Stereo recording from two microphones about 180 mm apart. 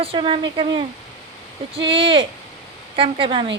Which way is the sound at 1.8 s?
30° right (ahead or behind).